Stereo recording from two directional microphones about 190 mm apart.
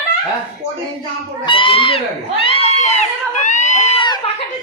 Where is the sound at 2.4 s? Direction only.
30° left (ahead or behind).